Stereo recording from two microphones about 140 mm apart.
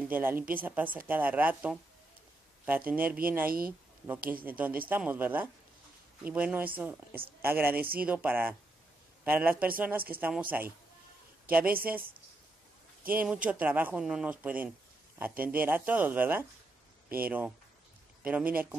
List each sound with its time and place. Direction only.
0.0 s speech: 15° right (ahead or behind)
2.9 s speech: 10° right (ahead or behind)
3.4 s speech: 90° right
4.5 s speech: 10° right (ahead or behind)
13.1 s speech: 10° right (ahead or behind)